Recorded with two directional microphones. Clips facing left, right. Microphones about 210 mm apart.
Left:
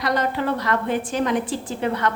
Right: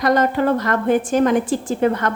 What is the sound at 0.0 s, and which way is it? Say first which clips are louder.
A woman's voice: right 6 dB; 45° right (ahead or behind).